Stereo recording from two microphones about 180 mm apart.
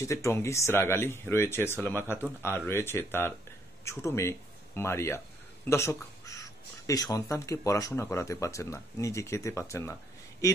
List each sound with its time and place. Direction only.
0.0 s speech: 15° left (ahead or behind)